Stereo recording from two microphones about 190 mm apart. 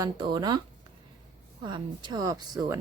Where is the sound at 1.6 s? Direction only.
25° right (ahead or behind).